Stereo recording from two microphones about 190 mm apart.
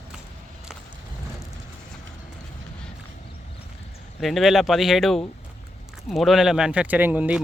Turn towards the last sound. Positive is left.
turn(degrees=-5)  # may be behind; listen again after turning